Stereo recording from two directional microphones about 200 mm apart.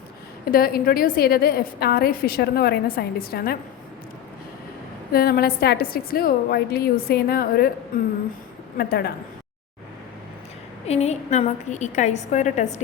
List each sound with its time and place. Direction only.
0.5 s a woman's voice: 50° left (ahead or behind)
5.1 s a woman's voice: 50° left (ahead or behind)
8.8 s a woman's voice: 50° left (ahead or behind)
10.8 s a woman's voice: 30° left (ahead or behind)